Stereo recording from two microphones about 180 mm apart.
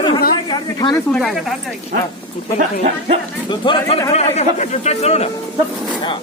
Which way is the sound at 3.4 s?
25° left (ahead or behind).